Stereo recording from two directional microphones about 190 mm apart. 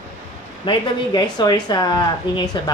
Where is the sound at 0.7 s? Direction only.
20° left (ahead or behind).